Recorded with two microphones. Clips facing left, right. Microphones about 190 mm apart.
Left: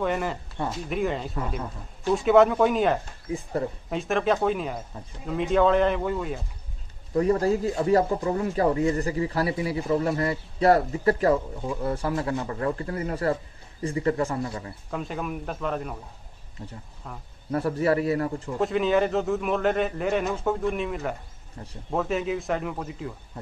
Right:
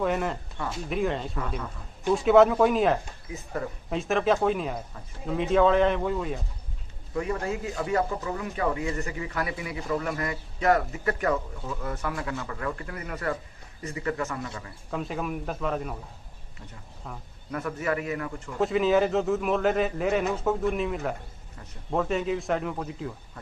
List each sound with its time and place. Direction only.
0.0 s a man's voice: centre (ahead or behind)
3.3 s speech: 30° left (ahead or behind)
3.9 s a man's voice: centre (ahead or behind)
7.2 s speech: 35° left (ahead or behind)
14.9 s a man's voice: centre (ahead or behind)
17.5 s speech: 35° left (ahead or behind)
18.6 s a man's voice: centre (ahead or behind)